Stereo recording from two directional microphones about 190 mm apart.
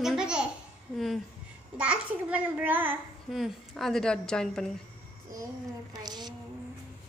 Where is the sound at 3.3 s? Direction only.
Centre (ahead or behind).